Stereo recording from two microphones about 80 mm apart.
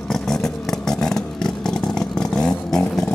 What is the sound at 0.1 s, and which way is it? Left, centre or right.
Vehicle, centre.